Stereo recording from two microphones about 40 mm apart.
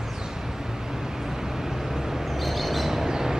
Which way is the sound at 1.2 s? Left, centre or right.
Centre.